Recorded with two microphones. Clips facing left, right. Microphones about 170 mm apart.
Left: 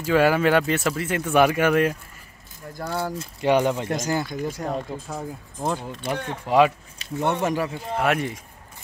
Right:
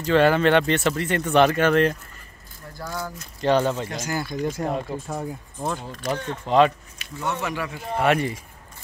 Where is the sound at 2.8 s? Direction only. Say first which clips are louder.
Left 5 dB; 30° left (ahead or behind).